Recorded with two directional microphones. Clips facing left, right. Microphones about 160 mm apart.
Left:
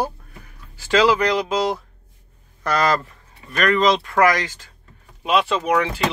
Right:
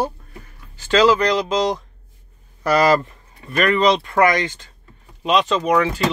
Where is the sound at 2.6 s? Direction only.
10° right (ahead or behind).